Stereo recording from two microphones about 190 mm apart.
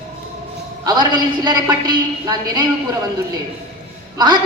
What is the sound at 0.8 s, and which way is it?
A man's voice, 20° right (ahead or behind).